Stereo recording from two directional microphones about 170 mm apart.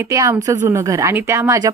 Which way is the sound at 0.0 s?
20° right (ahead or behind).